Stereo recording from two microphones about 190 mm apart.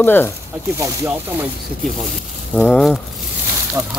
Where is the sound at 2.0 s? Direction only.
Centre (ahead or behind).